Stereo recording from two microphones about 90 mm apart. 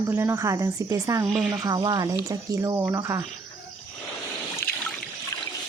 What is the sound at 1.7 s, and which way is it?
Speech, 50° right (ahead or behind).